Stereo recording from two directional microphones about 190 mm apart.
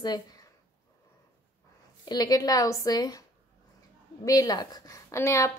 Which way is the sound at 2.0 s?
20° left (ahead or behind).